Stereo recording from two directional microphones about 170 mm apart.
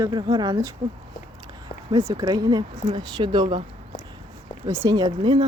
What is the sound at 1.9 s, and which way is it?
Speech, 25° right (ahead or behind).